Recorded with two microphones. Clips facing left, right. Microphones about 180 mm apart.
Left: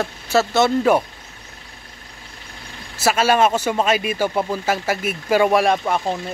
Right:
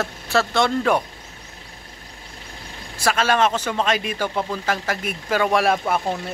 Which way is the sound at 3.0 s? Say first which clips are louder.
Left 3 dB; 10° left (ahead or behind).